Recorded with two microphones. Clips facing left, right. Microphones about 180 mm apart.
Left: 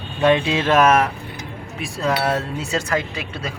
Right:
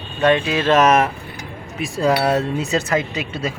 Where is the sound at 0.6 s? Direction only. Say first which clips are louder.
Right 1 dB; centre (ahead or behind).